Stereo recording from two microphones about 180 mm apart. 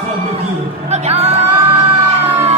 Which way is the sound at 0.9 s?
35° right (ahead or behind).